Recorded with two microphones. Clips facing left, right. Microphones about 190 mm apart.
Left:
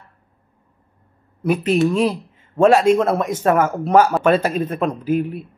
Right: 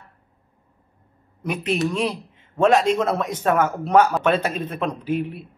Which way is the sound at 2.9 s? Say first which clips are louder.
Left 6 dB; 45° left (ahead or behind).